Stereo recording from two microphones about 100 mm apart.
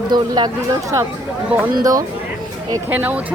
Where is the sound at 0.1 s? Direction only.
45° right (ahead or behind).